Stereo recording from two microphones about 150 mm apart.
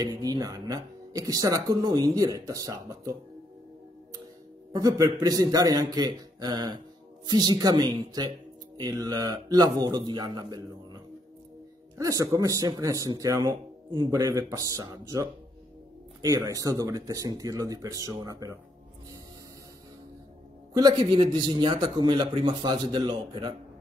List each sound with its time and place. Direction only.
0.0 s speech: 25° right (ahead or behind)
4.7 s speech: 25° right (ahead or behind)
12.0 s speech: 20° right (ahead or behind)
20.9 s a man's voice: 35° right (ahead or behind)